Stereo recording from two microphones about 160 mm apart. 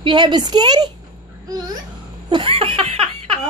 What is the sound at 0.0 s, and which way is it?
Speech, 30° right (ahead or behind).